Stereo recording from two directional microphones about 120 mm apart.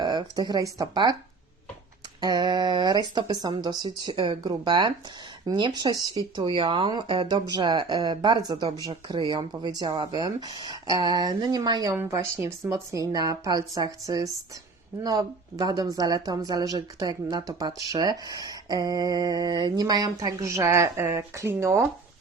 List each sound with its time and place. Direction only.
0.0 s speech: 40° right (ahead or behind)
2.2 s speech: 35° right (ahead or behind)
11.9 s speech: 25° right (ahead or behind)